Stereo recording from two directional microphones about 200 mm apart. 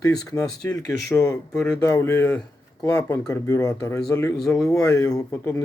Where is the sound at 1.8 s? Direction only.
10° left (ahead or behind).